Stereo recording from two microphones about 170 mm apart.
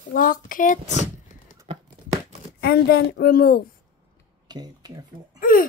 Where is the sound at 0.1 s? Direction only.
55° left (ahead or behind).